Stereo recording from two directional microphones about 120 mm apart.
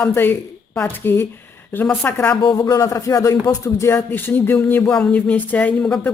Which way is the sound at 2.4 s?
30° left (ahead or behind).